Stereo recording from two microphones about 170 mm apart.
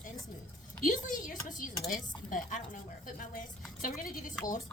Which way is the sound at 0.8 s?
50° left (ahead or behind).